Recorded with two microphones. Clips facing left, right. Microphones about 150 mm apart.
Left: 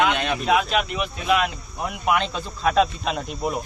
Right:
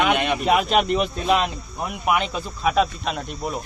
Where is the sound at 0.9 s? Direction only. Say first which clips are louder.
Right 2 dB; 35° right (ahead or behind).